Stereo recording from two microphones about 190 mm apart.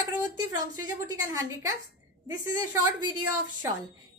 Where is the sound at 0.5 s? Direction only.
20° right (ahead or behind).